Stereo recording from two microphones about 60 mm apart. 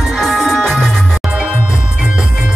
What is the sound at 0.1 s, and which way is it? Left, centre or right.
Music, centre.